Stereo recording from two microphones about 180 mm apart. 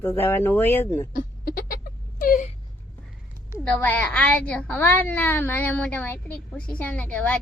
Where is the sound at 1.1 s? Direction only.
55° left (ahead or behind).